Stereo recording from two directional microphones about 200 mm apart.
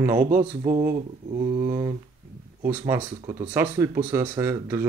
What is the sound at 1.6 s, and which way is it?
Speech, 20° right (ahead or behind).